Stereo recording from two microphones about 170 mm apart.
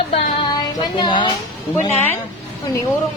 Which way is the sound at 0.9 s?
30° left (ahead or behind).